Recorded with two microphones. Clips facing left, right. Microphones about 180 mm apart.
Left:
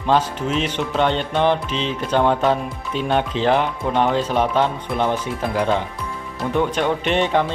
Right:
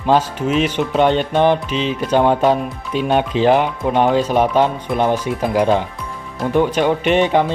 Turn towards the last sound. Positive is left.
turn(degrees=-10)  # may be behind; listen again after turning